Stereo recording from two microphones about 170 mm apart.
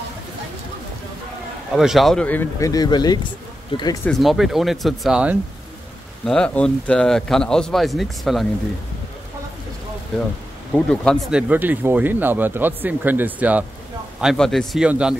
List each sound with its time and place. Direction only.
1.8 s a man's voice: centre (ahead or behind)
2.7 s speech: 25° left (ahead or behind)
4.0 s a man's voice: centre (ahead or behind)
6.2 s a man's voice: 5° left (ahead or behind)
10.7 s speech: 5° left (ahead or behind)
14.2 s a man's voice: centre (ahead or behind)